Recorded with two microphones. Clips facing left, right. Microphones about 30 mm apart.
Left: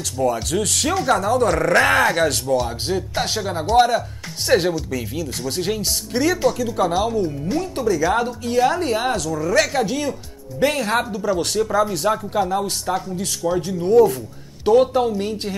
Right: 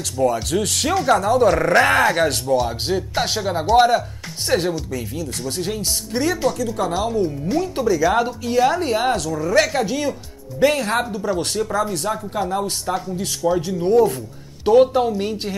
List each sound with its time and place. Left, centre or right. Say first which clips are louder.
0.2 s speech: right 1 dB; centre
4.5 s speech: left 3 dB; centre
6.1 s speech: left 2 dB; centre
7.7 s speech: even; right
8.0 s speech: right 1 dB; centre
11.7 s speech: left 4 dB; centre